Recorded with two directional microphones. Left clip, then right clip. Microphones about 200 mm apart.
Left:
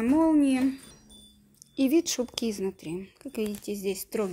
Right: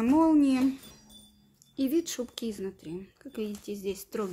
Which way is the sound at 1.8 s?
20° left (ahead or behind).